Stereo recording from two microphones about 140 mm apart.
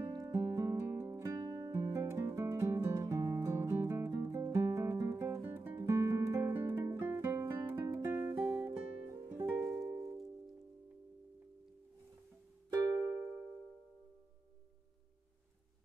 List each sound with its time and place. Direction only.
0.1 s music: 25° right (ahead or behind)
12.6 s music: 25° right (ahead or behind)